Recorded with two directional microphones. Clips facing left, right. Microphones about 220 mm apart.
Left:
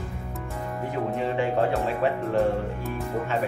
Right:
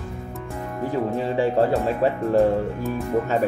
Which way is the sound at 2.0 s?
40° right (ahead or behind).